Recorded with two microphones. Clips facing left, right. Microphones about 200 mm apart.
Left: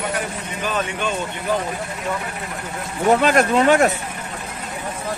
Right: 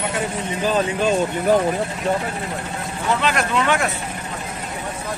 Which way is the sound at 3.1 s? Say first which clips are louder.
Left 5 dB; 45° left (ahead or behind).